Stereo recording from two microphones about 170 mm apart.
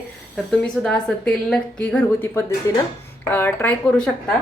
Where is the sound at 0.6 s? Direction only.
5° left (ahead or behind).